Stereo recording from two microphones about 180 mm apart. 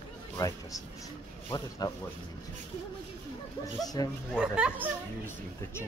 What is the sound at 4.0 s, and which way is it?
Speech, 20° left (ahead or behind).